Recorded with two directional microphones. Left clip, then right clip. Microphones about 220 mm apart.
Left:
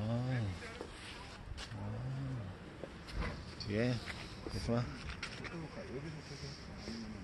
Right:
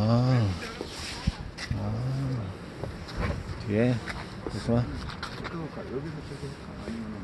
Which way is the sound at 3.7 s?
5° right (ahead or behind).